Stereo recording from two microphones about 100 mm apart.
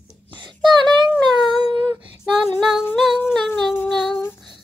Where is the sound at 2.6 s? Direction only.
5° right (ahead or behind).